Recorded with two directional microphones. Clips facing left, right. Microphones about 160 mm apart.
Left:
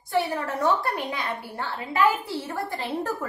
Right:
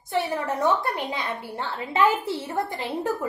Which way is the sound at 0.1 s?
20° right (ahead or behind).